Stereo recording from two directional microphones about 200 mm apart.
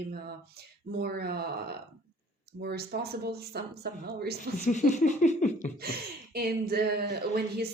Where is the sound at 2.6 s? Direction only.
50° right (ahead or behind).